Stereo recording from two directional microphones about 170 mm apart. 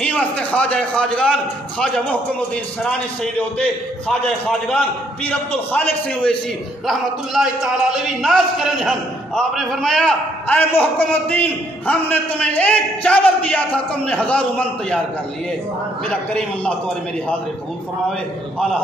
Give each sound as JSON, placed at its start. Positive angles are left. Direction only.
{"t": 0.0, "sound": "a man's voice", "side_deg": 5}
{"t": 16.1, "sound": "a man's voice", "side_deg": 5}